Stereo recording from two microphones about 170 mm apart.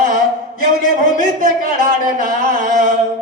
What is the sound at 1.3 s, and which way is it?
Music, 60° right (ahead or behind).